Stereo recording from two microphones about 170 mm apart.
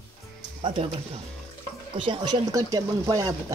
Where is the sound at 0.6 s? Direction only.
30° right (ahead or behind).